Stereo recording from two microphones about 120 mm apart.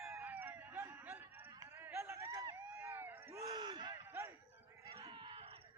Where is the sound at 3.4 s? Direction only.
35° right (ahead or behind).